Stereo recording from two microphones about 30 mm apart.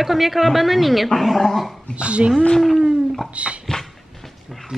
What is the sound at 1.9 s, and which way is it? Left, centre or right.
Speech, right.